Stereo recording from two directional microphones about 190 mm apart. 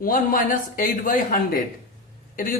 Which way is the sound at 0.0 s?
45° left (ahead or behind).